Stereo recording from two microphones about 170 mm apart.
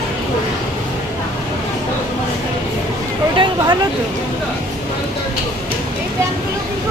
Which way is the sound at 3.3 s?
30° right (ahead or behind).